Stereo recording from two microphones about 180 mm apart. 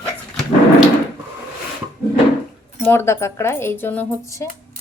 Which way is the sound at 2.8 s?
15° left (ahead or behind).